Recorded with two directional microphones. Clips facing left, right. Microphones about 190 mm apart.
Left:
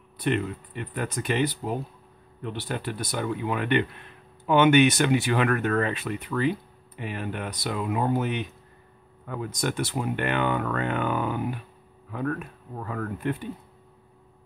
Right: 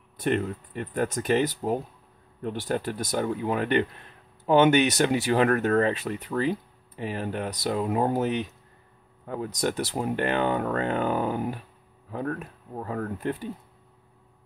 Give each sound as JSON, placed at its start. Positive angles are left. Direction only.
{"t": 0.2, "sound": "speech", "side_deg": -40}